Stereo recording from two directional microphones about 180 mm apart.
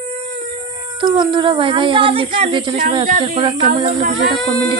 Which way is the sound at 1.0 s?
25° right (ahead or behind).